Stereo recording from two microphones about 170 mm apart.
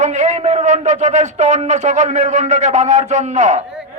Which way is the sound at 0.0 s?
45° right (ahead or behind).